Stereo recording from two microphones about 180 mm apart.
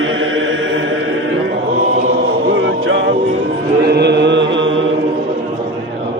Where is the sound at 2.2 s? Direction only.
90° right.